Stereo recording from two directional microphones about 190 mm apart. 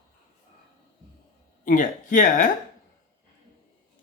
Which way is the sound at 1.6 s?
45° left (ahead or behind).